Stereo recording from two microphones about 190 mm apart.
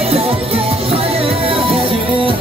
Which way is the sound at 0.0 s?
30° right (ahead or behind).